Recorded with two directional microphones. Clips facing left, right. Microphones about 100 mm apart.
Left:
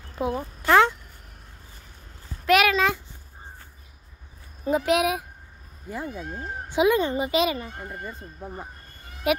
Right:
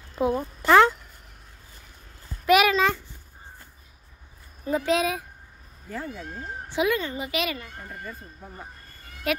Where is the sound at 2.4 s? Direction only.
Centre (ahead or behind).